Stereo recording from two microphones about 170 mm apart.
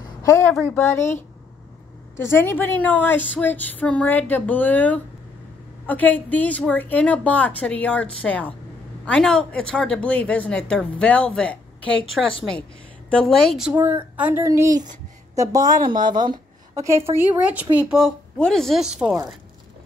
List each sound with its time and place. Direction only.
0.0 s a sound: 20° left (ahead or behind)
0.7 s a woman's voice: 15° left (ahead or behind)
2.1 s a woman's voice: 15° left (ahead or behind)
13.1 s a woman's voice: 5° left (ahead or behind); by 14.9 s 20° right (ahead or behind)
15.6 s speech: 50° right (ahead or behind)
15.9 s a woman's voice: 25° right (ahead or behind); by 19.1 s 5° right (ahead or behind)